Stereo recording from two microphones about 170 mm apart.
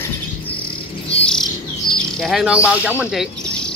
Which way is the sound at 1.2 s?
5° left (ahead or behind).